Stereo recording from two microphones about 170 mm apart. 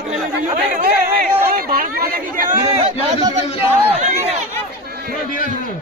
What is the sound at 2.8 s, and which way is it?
A man's voice, 30° right (ahead or behind).